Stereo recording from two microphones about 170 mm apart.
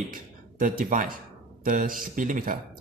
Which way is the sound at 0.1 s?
55° right (ahead or behind).